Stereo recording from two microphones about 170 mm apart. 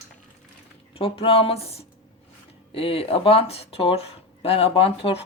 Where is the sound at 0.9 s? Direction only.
35° left (ahead or behind).